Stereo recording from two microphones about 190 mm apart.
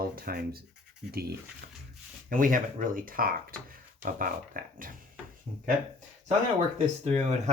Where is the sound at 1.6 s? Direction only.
55° right (ahead or behind).